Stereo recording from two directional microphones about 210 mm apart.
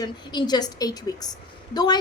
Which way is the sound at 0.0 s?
20° left (ahead or behind).